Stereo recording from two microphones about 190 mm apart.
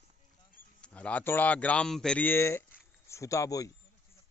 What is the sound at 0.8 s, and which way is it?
Speech, 5° left (ahead or behind).